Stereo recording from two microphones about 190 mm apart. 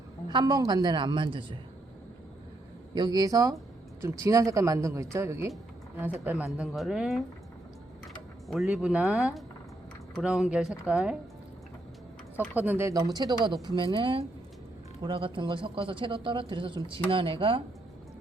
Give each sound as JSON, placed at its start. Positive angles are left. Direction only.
{"t": 0.3, "sound": "speech", "side_deg": -20}
{"t": 2.9, "sound": "speech", "side_deg": -20}
{"t": 8.4, "sound": "speech", "side_deg": 0}
{"t": 12.5, "sound": "speech", "side_deg": -10}